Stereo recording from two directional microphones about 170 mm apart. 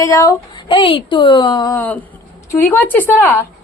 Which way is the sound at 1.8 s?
10° left (ahead or behind).